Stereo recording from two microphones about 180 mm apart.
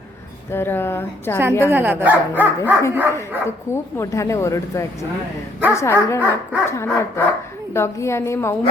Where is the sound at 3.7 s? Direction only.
15° left (ahead or behind).